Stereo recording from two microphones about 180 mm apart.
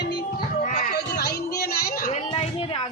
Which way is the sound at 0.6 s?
45° left (ahead or behind).